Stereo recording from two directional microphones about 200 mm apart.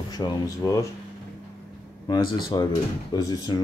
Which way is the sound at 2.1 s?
20° left (ahead or behind).